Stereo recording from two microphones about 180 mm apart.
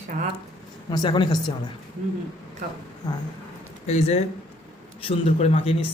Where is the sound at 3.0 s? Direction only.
25° left (ahead or behind).